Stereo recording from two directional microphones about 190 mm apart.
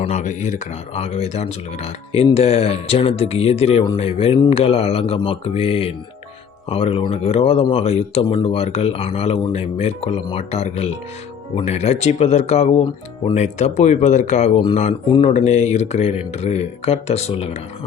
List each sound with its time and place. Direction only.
0.0 s speech: 40° left (ahead or behind)